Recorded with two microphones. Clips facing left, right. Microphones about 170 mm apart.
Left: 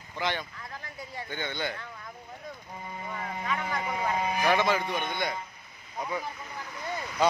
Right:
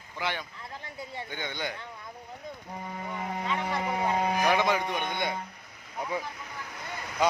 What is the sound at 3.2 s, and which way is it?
Vehicle, 25° right (ahead or behind).